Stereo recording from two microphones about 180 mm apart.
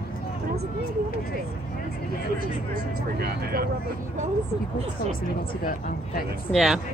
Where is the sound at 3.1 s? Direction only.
60° right (ahead or behind).